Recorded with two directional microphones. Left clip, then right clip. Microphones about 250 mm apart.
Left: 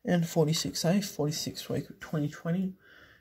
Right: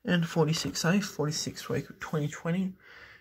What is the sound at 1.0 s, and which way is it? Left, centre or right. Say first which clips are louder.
Speech: even; centre.